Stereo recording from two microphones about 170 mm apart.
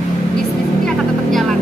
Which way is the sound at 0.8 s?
Centre (ahead or behind).